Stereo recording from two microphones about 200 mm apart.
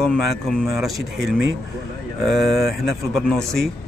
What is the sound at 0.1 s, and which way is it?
Speech, centre (ahead or behind).